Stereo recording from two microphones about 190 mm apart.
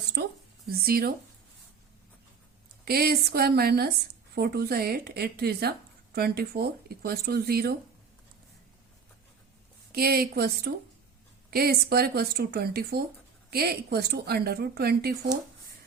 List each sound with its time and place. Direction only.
0.2 s a woman's voice: 55° right (ahead or behind)
2.8 s a woman's voice: 55° right (ahead or behind)
9.9 s a woman's voice: 55° right (ahead or behind)